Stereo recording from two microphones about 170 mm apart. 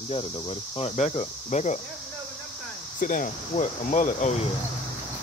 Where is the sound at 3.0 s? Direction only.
50° left (ahead or behind).